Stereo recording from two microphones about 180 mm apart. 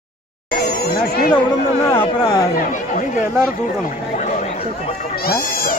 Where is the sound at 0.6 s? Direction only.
60° left (ahead or behind).